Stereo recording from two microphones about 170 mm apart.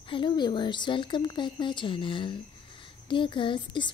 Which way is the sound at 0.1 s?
30° left (ahead or behind).